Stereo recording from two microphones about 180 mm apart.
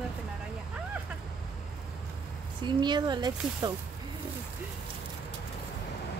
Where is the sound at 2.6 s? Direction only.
25° right (ahead or behind).